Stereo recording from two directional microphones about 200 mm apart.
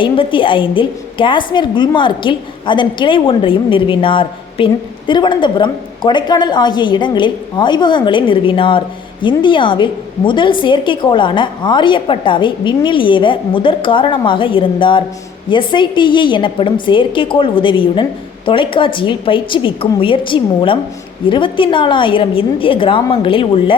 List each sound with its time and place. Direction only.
0.0 s a woman's voice: 25° left (ahead or behind)